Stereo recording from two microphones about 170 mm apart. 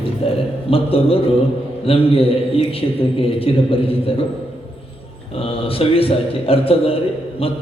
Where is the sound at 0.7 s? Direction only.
35° left (ahead or behind).